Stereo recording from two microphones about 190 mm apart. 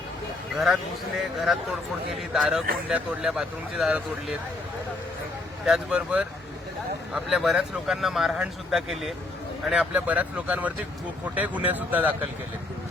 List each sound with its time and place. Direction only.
0.5 s speech: centre (ahead or behind)
5.6 s speech: 5° right (ahead or behind)